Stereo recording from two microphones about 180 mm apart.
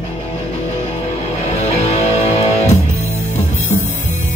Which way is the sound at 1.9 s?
35° left (ahead or behind).